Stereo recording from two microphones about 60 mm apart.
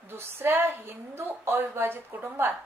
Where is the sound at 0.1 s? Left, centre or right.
Right.